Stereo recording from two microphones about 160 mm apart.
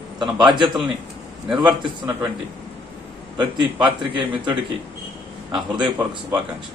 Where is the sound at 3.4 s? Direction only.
30° right (ahead or behind).